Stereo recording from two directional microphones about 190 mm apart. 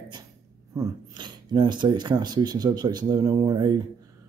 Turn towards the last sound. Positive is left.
turn(degrees=-20)  # may be behind; listen again after turning